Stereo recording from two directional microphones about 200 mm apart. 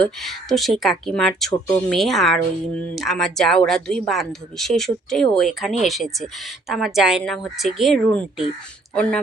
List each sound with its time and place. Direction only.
0.0 s speech: centre (ahead or behind)